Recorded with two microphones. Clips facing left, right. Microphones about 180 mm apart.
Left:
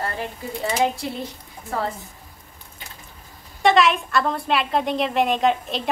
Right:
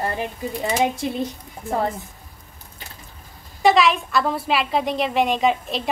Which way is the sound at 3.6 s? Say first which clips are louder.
Right 1 dB; centre (ahead or behind).